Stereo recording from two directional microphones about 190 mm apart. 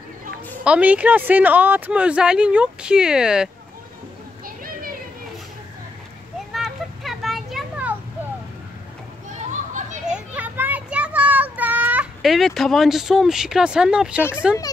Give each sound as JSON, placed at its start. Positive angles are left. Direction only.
{"t": 0.7, "sound": "speech", "side_deg": -5}
{"t": 6.5, "sound": "children playing", "side_deg": 0}
{"t": 9.3, "sound": "children playing", "side_deg": -40}
{"t": 10.1, "sound": "child singing", "side_deg": -10}
{"t": 14.3, "sound": "speech", "side_deg": -5}